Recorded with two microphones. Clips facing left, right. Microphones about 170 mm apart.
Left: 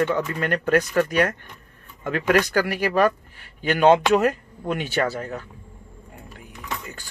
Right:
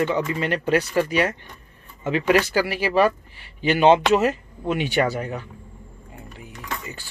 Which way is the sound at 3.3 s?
45° left (ahead or behind).